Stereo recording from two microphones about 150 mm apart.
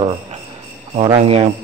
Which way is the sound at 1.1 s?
40° right (ahead or behind).